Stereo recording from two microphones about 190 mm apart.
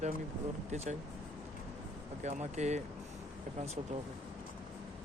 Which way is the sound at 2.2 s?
35° right (ahead or behind).